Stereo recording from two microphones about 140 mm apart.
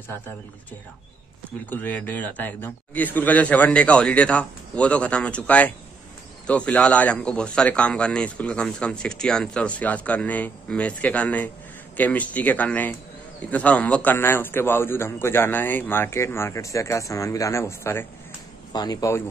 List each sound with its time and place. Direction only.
1.7 s a man's voice: 10° left (ahead or behind)
18.7 s speech: 30° left (ahead or behind)